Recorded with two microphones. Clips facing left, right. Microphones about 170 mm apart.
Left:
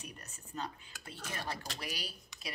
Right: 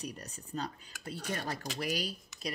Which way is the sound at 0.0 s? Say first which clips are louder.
Right 8 dB; 35° right (ahead or behind).